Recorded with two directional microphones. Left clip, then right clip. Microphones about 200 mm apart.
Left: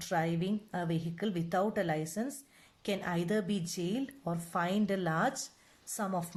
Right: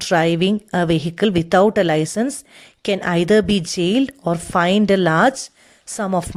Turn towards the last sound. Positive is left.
turn(degrees=-45)  # may be behind; listen again after turning